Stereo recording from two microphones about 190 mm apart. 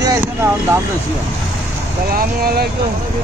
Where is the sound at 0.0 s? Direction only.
15° right (ahead or behind).